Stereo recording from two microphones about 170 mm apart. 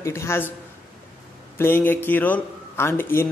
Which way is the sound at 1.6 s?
10° left (ahead or behind).